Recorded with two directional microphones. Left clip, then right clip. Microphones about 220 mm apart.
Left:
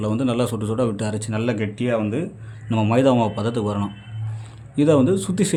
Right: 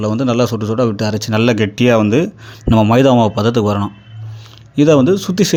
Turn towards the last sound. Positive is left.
turn(degrees=-20)  # may be behind; listen again after turning